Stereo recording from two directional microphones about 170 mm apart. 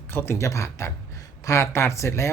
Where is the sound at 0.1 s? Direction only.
15° left (ahead or behind).